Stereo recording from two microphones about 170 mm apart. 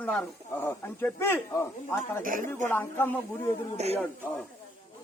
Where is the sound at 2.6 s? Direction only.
10° left (ahead or behind).